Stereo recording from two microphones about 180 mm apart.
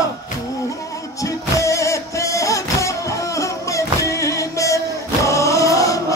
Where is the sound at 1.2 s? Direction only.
15° left (ahead or behind).